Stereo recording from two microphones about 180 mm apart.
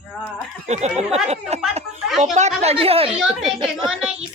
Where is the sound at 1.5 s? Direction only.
35° right (ahead or behind).